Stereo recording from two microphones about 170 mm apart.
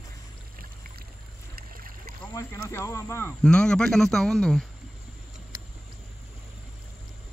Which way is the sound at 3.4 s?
5° left (ahead or behind).